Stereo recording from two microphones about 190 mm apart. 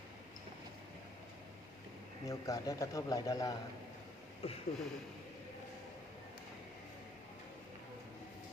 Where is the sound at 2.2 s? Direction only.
15° left (ahead or behind).